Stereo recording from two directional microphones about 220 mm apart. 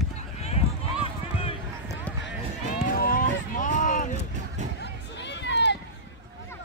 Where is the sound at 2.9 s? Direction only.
40° left (ahead or behind).